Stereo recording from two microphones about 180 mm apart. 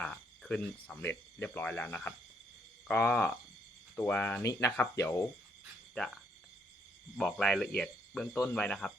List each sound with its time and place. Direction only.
0.0 s speech: 5° left (ahead or behind)
7.2 s cricket: 5° left (ahead or behind)
7.8 s speech: 5° left (ahead or behind)
8.4 s cricket: 5° left (ahead or behind)